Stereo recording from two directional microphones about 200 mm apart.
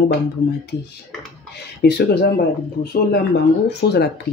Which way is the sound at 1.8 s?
55° left (ahead or behind).